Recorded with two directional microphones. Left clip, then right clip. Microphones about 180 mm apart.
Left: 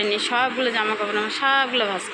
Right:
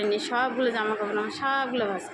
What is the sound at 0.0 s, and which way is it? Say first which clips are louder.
A woman's voice: left 4 dB; 10° right (ahead or behind).